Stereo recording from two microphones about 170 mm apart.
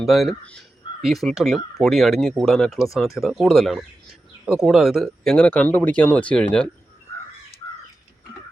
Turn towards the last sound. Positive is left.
turn(degrees=5)  # may be behind; listen again after turning